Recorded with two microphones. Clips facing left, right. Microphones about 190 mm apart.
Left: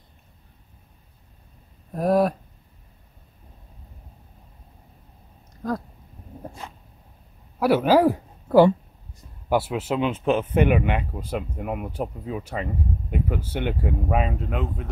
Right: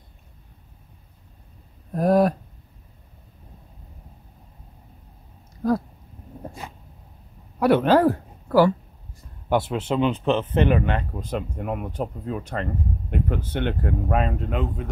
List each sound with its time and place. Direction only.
1.9 s a sound: centre (ahead or behind)
6.4 s dog: 10° right (ahead or behind)
7.5 s speech: 5° left (ahead or behind)
8.5 s speech: 25° left (ahead or behind)
9.5 s speech: 5° left (ahead or behind)